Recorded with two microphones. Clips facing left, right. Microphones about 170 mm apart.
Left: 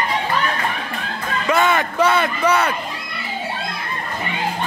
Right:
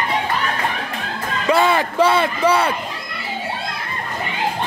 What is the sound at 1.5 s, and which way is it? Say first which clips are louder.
A man's voice: right 1 dB; 30° right (ahead or behind).